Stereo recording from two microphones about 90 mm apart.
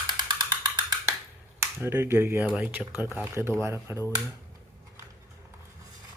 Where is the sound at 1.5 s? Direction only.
25° right (ahead or behind).